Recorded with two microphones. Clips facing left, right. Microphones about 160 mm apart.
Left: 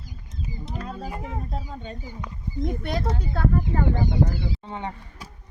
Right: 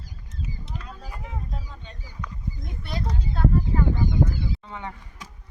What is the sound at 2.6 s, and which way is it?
Speech, 50° left (ahead or behind).